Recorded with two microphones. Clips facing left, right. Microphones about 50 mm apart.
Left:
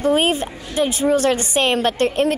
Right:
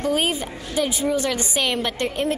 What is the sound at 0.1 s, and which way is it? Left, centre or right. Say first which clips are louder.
A woman's voice: left 5 dB; left.